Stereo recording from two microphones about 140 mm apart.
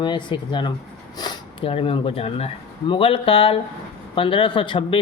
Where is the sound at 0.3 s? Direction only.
35° left (ahead or behind).